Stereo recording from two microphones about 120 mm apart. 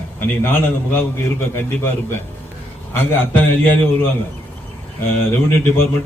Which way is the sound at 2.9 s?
15° left (ahead or behind).